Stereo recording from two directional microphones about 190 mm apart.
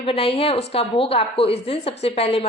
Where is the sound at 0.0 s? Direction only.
30° left (ahead or behind).